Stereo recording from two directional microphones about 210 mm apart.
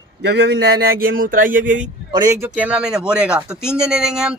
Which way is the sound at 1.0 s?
45° right (ahead or behind).